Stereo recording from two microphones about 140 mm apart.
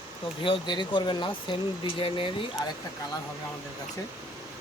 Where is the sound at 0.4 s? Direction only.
35° left (ahead or behind).